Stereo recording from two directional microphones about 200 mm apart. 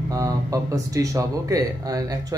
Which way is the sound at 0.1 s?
15° right (ahead or behind).